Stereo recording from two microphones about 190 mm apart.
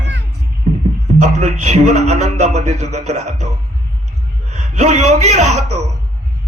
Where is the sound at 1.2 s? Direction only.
40° right (ahead or behind).